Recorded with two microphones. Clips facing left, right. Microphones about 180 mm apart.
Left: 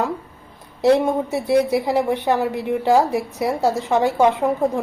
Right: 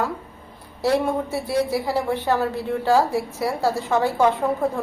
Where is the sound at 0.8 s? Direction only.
20° left (ahead or behind).